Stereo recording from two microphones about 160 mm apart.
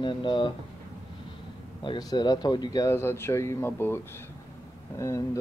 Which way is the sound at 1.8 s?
25° left (ahead or behind).